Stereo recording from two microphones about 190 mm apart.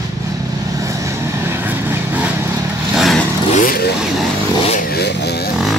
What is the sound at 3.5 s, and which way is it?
Vehicle, 50° left (ahead or behind).